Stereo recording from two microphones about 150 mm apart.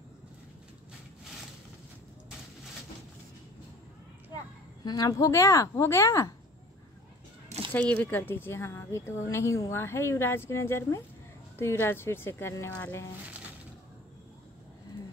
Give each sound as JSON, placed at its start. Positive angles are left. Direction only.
{"t": 4.8, "sound": "a woman's voice", "side_deg": 25}
{"t": 7.9, "sound": "a woman's voice", "side_deg": 10}